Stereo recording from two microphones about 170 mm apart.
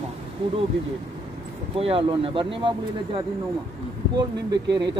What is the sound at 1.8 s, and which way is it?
Speech, 30° right (ahead or behind).